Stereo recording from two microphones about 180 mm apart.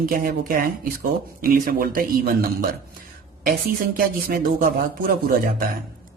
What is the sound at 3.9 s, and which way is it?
Speech, 50° right (ahead or behind).